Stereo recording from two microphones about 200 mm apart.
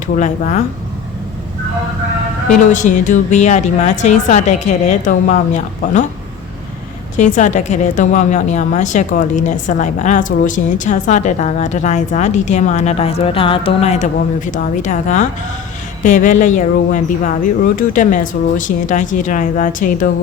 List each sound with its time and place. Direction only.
0.2 s a woman's voice: 35° left (ahead or behind)
2.7 s a woman's voice: 40° left (ahead or behind)
7.2 s a woman's voice: 35° left (ahead or behind)